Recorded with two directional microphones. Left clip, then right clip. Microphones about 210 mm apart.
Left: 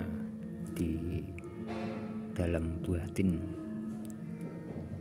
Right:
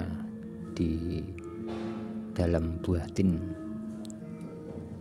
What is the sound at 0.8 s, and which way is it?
Music, 55° right (ahead or behind).